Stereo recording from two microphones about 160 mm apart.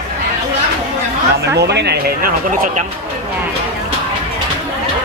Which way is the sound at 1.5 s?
90° right.